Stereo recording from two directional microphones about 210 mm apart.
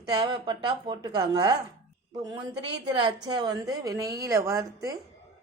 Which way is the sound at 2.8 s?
20° right (ahead or behind).